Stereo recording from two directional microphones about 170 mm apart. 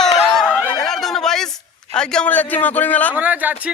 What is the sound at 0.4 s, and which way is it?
Chatter, 5° right (ahead or behind).